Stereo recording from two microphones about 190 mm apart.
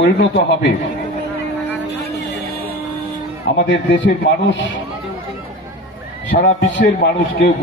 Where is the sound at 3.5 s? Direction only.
65° left (ahead or behind).